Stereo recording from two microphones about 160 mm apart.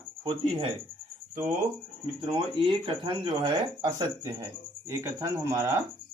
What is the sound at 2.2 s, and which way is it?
Speech, 30° right (ahead or behind).